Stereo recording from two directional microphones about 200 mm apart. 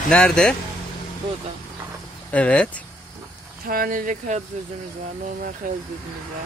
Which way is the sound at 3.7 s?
45° right (ahead or behind).